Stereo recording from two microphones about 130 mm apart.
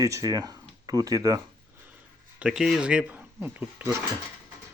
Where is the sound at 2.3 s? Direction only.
5° right (ahead or behind).